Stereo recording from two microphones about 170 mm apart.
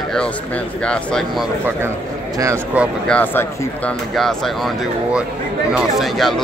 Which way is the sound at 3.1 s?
10° left (ahead or behind).